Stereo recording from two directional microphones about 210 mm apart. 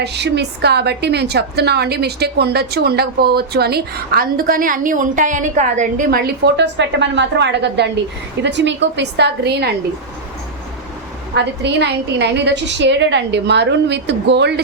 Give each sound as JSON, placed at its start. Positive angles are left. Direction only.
{"t": 0.0, "sound": "a woman's voice", "side_deg": -55}
{"t": 11.3, "sound": "a woman's voice", "side_deg": -55}